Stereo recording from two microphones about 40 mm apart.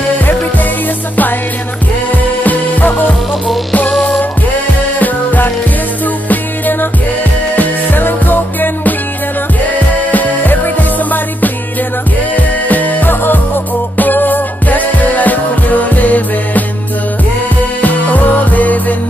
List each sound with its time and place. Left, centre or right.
2.4 s music: left
4.9 s music: left
10.1 s music: left
17.8 s music: left